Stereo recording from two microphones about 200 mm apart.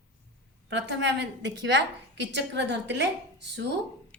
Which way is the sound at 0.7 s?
60° right (ahead or behind).